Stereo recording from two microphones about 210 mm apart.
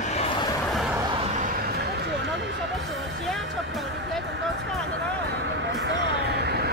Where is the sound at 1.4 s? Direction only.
50° right (ahead or behind).